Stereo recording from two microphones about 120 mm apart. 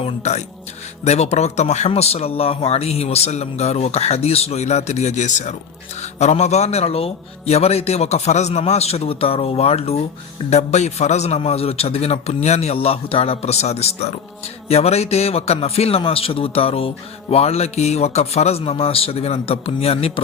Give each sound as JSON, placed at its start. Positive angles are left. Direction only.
{"t": 0.0, "sound": "a man's voice", "side_deg": 65}
{"t": 6.0, "sound": "a man's voice", "side_deg": 70}
{"t": 10.5, "sound": "a man's voice", "side_deg": 70}